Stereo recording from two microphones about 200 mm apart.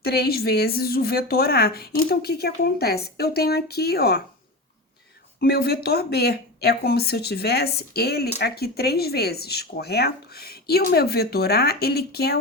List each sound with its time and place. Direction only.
0.0 s a woman's voice: 50° left (ahead or behind)
5.4 s a woman's voice: 50° left (ahead or behind)